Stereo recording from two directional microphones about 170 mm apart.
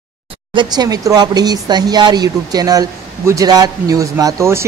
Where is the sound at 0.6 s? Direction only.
25° right (ahead or behind).